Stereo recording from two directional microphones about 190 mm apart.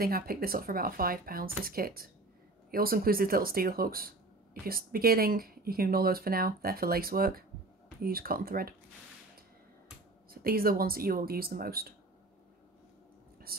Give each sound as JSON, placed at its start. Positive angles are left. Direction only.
{"t": 0.0, "sound": "speech", "side_deg": -50}
{"t": 10.3, "sound": "speech", "side_deg": -50}
{"t": 13.5, "sound": "speech", "side_deg": -50}